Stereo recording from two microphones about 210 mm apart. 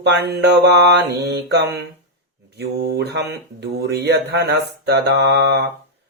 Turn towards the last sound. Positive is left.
turn(degrees=-55)  # may be behind; listen again after turning